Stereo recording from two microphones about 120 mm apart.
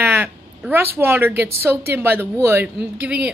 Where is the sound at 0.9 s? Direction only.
20° right (ahead or behind).